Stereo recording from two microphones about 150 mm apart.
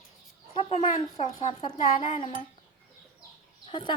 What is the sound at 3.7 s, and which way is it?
Speech, 35° left (ahead or behind).